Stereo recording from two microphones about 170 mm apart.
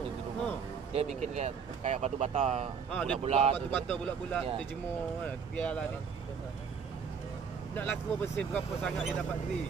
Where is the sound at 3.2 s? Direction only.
35° right (ahead or behind).